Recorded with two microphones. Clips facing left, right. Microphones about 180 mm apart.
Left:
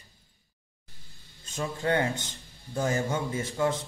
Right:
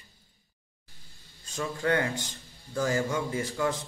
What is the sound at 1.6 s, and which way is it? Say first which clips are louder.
Speech: even; 25° left (ahead or behind).